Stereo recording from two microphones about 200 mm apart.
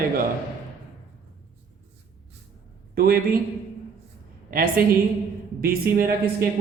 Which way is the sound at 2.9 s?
45° right (ahead or behind).